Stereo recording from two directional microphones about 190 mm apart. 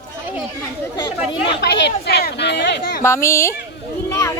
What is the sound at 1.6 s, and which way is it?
Speech, 65° left (ahead or behind).